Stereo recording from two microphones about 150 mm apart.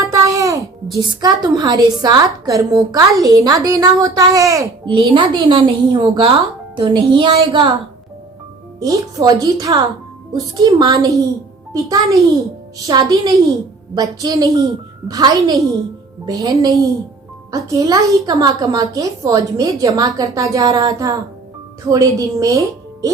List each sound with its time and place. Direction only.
0.0 s a sound: 20° right (ahead or behind)
1.2 s a woman's voice: 25° right (ahead or behind)
4.9 s speech: 35° right (ahead or behind)
8.8 s a woman's voice: 25° right (ahead or behind)